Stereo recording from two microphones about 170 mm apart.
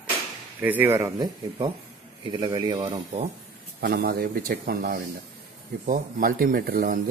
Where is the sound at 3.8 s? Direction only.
70° right (ahead or behind).